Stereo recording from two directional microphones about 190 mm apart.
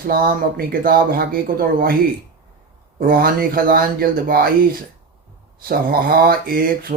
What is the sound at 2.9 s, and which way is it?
Speech, 50° right (ahead or behind).